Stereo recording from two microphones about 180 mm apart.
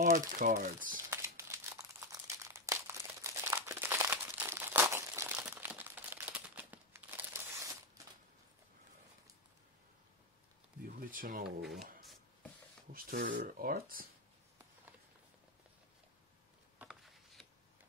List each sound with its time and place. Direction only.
0.0 s speech: 50° right (ahead or behind)
1.1 s crumpling: 15° right (ahead or behind)
10.9 s a sound: 50° right (ahead or behind)
11.4 s speech: centre (ahead or behind)
12.9 s speech: 50° right (ahead or behind)
16.7 s a sound: centre (ahead or behind)